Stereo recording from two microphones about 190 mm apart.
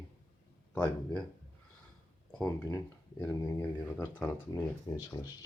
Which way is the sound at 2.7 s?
15° left (ahead or behind).